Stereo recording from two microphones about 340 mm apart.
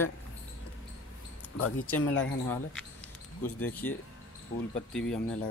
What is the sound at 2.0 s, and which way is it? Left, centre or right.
Speech, left.